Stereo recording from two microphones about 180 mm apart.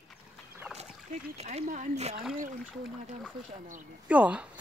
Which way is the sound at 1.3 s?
35° right (ahead or behind).